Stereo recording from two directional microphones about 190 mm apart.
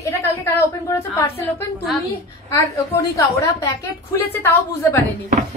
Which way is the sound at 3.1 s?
15° left (ahead or behind).